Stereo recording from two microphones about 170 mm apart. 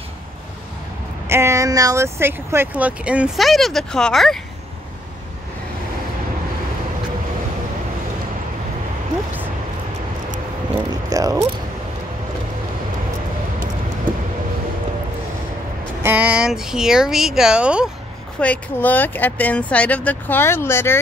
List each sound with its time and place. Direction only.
1.3 s speech: 15° right (ahead or behind); by 4.4 s centre (ahead or behind)
10.9 s vehicle: 20° right (ahead or behind)
16.0 s speech: 10° right (ahead or behind)
18.4 s speech: 10° left (ahead or behind)